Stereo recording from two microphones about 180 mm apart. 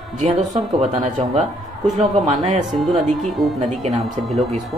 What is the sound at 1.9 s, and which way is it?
Speech, 40° right (ahead or behind).